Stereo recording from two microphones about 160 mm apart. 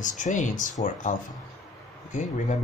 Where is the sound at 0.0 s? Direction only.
55° left (ahead or behind).